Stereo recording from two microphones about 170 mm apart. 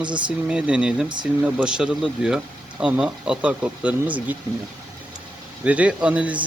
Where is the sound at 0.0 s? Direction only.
25° right (ahead or behind).